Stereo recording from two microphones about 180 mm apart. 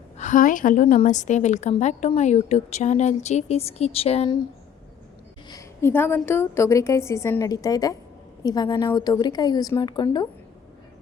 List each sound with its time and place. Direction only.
0.2 s a woman's voice: 45° left (ahead or behind)
5.5 s a woman's voice: 15° left (ahead or behind)